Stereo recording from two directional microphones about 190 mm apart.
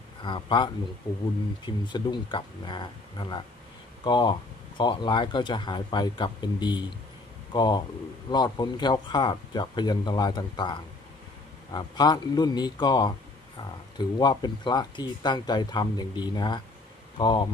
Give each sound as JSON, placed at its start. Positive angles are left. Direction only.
{"t": 0.2, "sound": "speech", "side_deg": 25}
{"t": 14.2, "sound": "speech", "side_deg": 20}